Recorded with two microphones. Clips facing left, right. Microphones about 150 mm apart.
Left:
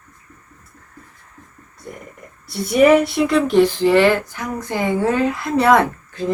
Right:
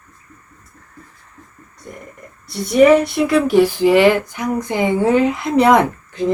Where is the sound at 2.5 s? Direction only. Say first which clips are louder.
Right 2 dB; 5° left (ahead or behind); by 6.2 s 15° right (ahead or behind).